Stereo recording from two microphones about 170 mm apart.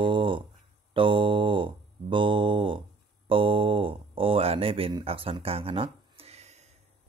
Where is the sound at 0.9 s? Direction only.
30° right (ahead or behind).